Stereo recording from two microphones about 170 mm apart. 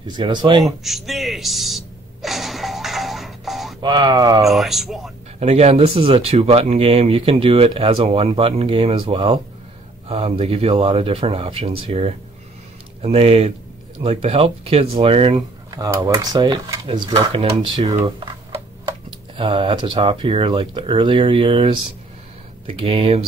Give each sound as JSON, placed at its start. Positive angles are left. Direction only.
{"t": 0.1, "sound": "speech", "side_deg": -25}
{"t": 0.7, "sound": "a sound", "side_deg": 0}
{"t": 3.8, "sound": "speech", "side_deg": -25}
{"t": 4.5, "sound": "speech", "side_deg": 0}
{"t": 5.4, "sound": "speech", "side_deg": -40}
{"t": 15.7, "sound": "speech", "side_deg": -20}
{"t": 17.8, "sound": "speech", "side_deg": -20}